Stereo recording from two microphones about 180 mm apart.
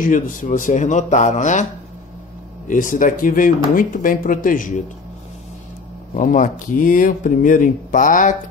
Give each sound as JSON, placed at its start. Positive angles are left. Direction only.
{"t": 0.0, "sound": "speech", "side_deg": 45}
{"t": 2.7, "sound": "speech", "side_deg": 45}
{"t": 6.1, "sound": "speech", "side_deg": 50}